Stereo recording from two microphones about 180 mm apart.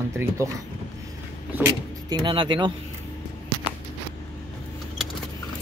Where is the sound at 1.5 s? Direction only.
15° right (ahead or behind).